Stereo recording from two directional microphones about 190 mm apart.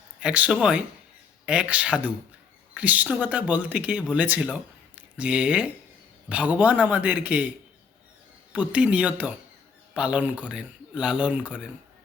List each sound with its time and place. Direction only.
0.2 s speech: 5° right (ahead or behind)
8.5 s speech: 5° right (ahead or behind)